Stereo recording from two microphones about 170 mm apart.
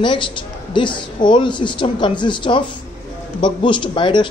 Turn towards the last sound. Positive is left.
turn(degrees=30)  # may be behind; listen again after turning